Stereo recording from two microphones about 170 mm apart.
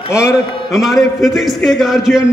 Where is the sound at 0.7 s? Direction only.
Centre (ahead or behind).